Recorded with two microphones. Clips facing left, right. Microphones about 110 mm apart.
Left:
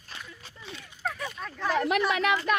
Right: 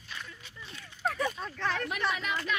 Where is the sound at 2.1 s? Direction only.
75° left (ahead or behind).